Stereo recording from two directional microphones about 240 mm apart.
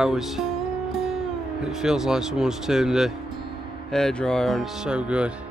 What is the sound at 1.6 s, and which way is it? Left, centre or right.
Music, centre.